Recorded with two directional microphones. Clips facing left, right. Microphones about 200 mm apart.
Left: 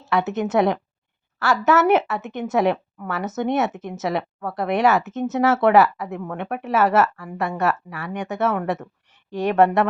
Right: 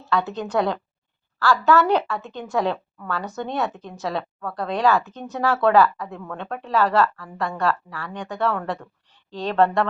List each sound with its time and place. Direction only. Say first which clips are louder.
0.0 s a woman's voice: left 3 dB; 20° left (ahead or behind)